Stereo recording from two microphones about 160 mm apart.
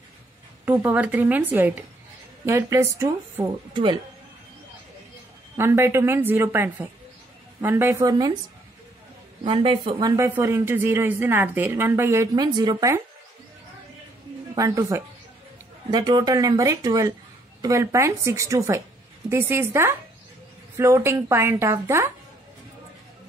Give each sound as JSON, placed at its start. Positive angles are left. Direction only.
{"t": 0.7, "sound": "a woman's voice", "side_deg": -10}
{"t": 3.7, "sound": "speech", "side_deg": -30}
{"t": 5.6, "sound": "a woman's voice", "side_deg": -15}
{"t": 9.4, "sound": "a woman's voice", "side_deg": -35}
{"t": 10.1, "sound": "a woman's voice", "side_deg": -20}
{"t": 14.5, "sound": "a woman's voice", "side_deg": -20}